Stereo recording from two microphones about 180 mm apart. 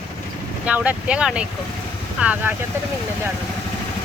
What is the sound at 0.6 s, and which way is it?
Speech, 10° right (ahead or behind).